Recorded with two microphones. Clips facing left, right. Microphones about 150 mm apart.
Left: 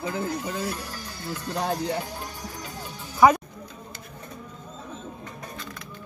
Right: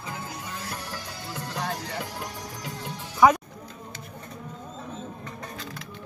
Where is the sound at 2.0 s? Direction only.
75° right (ahead or behind).